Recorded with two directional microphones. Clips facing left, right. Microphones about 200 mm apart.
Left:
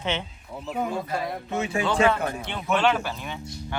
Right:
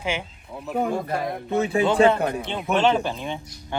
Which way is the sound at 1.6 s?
35° right (ahead or behind).